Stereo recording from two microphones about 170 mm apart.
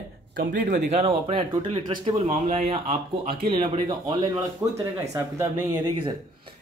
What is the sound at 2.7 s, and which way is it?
Speech, 30° right (ahead or behind).